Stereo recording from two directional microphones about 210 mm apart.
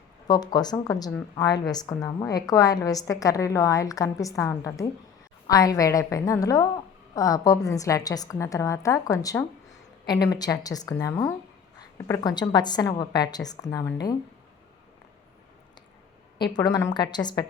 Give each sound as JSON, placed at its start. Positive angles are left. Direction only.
{"t": 0.3, "sound": "a woman's voice", "side_deg": 20}
{"t": 16.4, "sound": "a woman's voice", "side_deg": 20}